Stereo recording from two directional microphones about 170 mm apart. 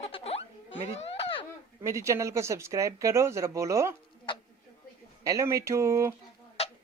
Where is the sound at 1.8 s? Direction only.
15° right (ahead or behind).